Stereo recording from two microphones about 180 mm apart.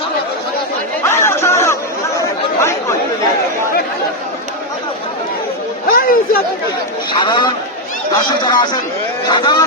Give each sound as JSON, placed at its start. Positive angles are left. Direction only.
{"t": 1.0, "sound": "chatter", "side_deg": 15}
{"t": 5.9, "sound": "a sound", "side_deg": 55}
{"t": 7.1, "sound": "speech", "side_deg": 25}